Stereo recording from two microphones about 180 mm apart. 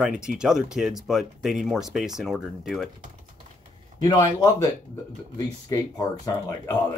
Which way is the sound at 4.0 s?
20° left (ahead or behind).